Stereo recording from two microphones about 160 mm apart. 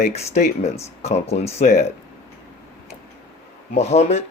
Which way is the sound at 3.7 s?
40° left (ahead or behind).